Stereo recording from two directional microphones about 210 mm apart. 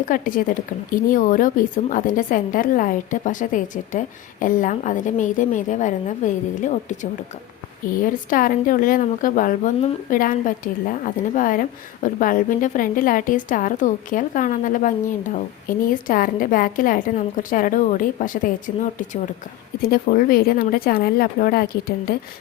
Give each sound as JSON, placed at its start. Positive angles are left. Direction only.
{"t": 0.0, "sound": "a woman's voice", "side_deg": 40}
{"t": 16.0, "sound": "a woman's voice", "side_deg": 40}